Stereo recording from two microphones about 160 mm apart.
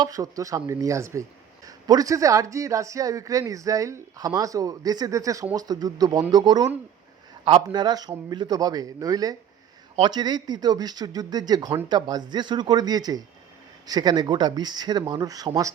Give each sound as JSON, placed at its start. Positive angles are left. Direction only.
{"t": 0.0, "sound": "speech", "side_deg": -20}